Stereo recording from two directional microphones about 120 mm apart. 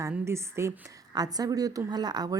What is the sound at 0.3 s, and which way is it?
A woman's voice, 25° right (ahead or behind).